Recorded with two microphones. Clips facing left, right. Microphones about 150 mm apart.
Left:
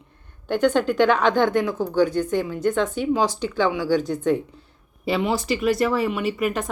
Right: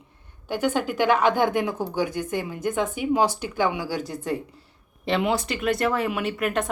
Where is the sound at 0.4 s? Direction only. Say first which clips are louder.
Left 5 dB; 10° right (ahead or behind).